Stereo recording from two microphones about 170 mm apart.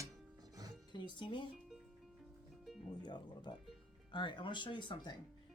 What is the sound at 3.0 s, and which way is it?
Speech, 25° left (ahead or behind).